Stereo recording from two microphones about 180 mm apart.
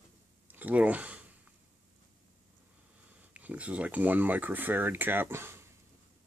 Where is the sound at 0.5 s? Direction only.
10° right (ahead or behind).